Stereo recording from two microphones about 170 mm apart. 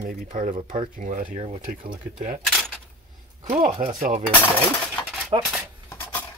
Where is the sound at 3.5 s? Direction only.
45° right (ahead or behind).